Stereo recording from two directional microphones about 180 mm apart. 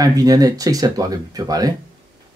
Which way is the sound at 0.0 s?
20° right (ahead or behind).